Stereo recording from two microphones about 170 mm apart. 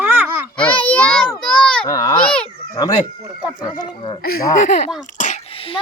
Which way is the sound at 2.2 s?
5° left (ahead or behind).